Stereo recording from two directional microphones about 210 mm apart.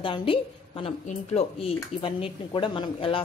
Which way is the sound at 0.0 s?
25° left (ahead or behind).